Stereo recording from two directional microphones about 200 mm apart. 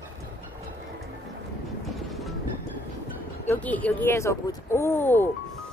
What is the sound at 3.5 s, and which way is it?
Speech, 5° left (ahead or behind).